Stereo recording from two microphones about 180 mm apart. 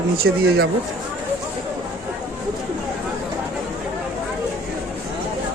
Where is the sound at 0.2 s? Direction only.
60° right (ahead or behind).